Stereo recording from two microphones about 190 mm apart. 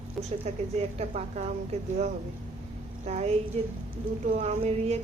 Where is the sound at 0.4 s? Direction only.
35° right (ahead or behind).